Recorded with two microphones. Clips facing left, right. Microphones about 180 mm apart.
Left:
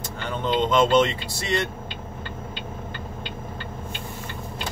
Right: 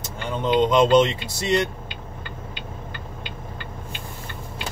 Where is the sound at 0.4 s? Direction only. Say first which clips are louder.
Right 3 dB; 15° right (ahead or behind).